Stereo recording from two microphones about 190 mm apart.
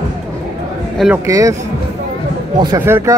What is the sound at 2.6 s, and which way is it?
Speech, 20° right (ahead or behind).